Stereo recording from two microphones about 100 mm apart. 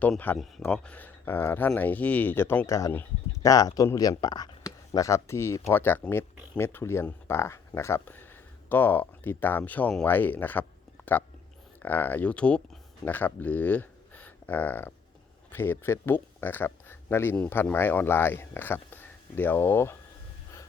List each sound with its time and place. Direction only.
0.3 s speech: 15° left (ahead or behind)
2.6 s speech: 30° left (ahead or behind)